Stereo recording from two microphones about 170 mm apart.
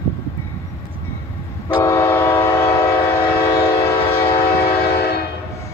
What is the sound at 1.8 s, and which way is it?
Train, 15° left (ahead or behind).